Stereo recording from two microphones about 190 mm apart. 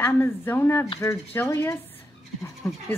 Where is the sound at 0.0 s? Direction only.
10° left (ahead or behind).